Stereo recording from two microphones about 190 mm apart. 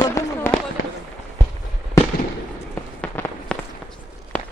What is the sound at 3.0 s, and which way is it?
Fireworks, 10° left (ahead or behind).